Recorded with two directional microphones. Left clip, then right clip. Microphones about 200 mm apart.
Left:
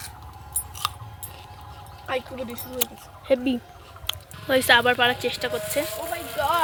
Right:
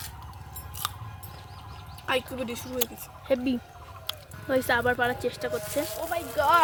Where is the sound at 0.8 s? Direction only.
10° left (ahead or behind).